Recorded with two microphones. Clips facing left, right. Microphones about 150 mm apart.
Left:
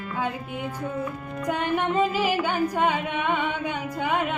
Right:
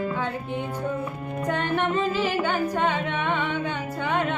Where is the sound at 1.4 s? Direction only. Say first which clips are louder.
Even; 10° left (ahead or behind).